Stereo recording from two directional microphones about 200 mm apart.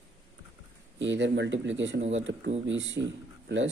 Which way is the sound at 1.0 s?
65° right (ahead or behind).